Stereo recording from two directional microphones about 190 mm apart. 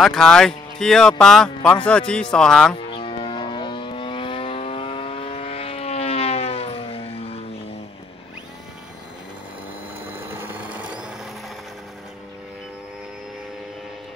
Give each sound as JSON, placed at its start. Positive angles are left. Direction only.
{"t": 0.0, "sound": "speech", "side_deg": 0}
{"t": 2.9, "sound": "vehicle", "side_deg": 25}
{"t": 10.1, "sound": "a sound", "side_deg": -10}